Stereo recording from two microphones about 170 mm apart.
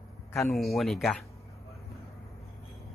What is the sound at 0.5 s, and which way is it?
Speech, centre (ahead or behind).